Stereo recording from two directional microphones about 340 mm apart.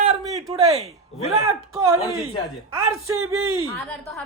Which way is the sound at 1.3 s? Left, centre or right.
Centre.